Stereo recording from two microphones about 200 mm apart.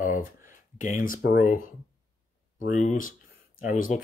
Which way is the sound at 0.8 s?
40° left (ahead or behind).